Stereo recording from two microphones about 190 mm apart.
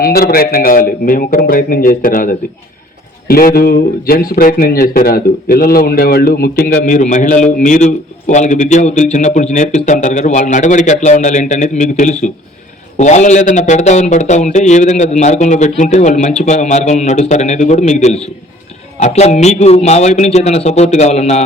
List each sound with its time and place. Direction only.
0.0 s a man's voice: 55° left (ahead or behind); by 21.4 s 35° left (ahead or behind)